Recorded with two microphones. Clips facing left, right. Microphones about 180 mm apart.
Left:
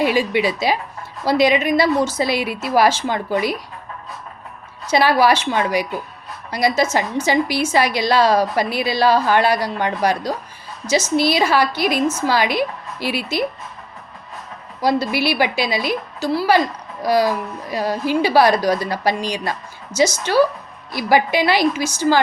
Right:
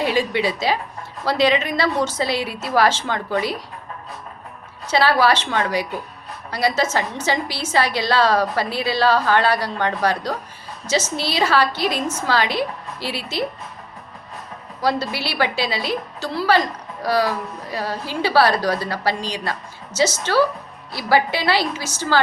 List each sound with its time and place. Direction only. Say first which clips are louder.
0.0 s a woman's voice: left 3 dB; 10° left (ahead or behind)
4.9 s a woman's voice: left 2 dB; 15° left (ahead or behind)
14.8 s a woman's voice: left 4 dB; 15° left (ahead or behind)